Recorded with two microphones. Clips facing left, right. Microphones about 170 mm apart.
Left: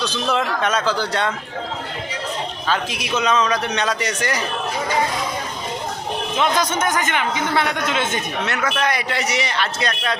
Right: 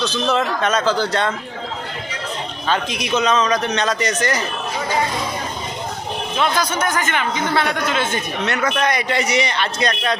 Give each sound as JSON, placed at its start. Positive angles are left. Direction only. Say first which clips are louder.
{"t": 0.0, "sound": "a man's voice", "louder": "right 2 dB", "side_deg": 15}
{"t": 2.6, "sound": "a man's voice", "louder": "right 3 dB", "side_deg": 5}
{"t": 6.3, "sound": "a man's voice", "louder": "even", "side_deg": 20}
{"t": 8.4, "sound": "a man's voice", "louder": "right 3 dB", "side_deg": 5}